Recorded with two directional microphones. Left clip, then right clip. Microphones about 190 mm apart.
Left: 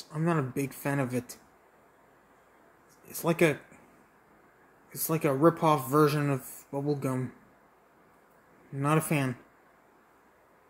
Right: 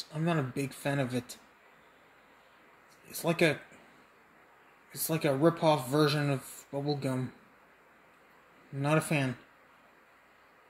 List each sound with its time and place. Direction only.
0.1 s speech: 5° left (ahead or behind)
3.1 s speech: 5° left (ahead or behind)
4.9 s speech: 5° left (ahead or behind)
8.8 s speech: 5° left (ahead or behind)